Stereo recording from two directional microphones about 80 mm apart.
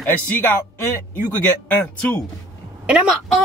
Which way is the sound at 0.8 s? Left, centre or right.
Left.